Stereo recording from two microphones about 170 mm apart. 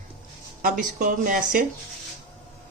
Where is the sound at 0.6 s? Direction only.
55° right (ahead or behind).